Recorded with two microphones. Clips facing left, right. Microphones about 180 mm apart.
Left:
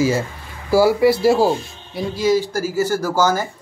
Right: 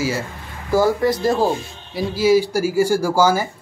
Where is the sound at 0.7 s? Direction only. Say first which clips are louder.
Left 3 dB; 10° left (ahead or behind).